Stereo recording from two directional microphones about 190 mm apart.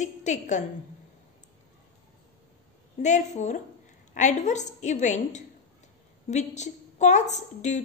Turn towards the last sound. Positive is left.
turn(degrees=40)  # may be behind; listen again after turning